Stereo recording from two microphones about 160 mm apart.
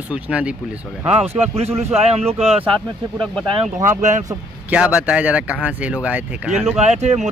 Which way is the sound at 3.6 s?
50° right (ahead or behind).